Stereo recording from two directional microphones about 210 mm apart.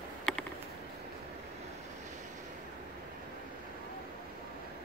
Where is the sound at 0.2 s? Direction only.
5° left (ahead or behind).